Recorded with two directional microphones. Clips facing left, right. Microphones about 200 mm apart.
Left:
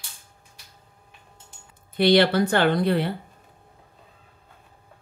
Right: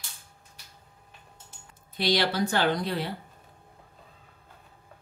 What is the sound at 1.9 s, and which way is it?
A woman's voice, 60° left (ahead or behind).